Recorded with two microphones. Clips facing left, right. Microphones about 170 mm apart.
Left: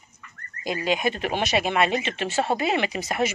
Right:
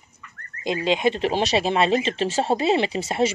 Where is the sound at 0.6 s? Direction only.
25° right (ahead or behind).